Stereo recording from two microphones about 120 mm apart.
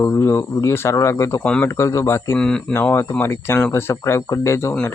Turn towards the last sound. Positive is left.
turn(degrees=20)  # may be behind; listen again after turning